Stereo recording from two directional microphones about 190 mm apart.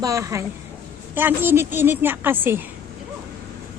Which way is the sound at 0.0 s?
15° right (ahead or behind).